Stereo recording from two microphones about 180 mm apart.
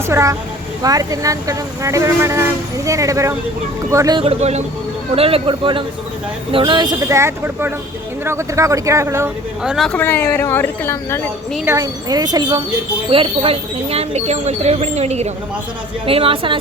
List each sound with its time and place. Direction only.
0.0 s speech: 15° right (ahead or behind)
4.2 s speech: 35° right (ahead or behind); by 9.3 s 15° right (ahead or behind)
9.6 s speech: centre (ahead or behind)
11.6 s speech: 15° right (ahead or behind)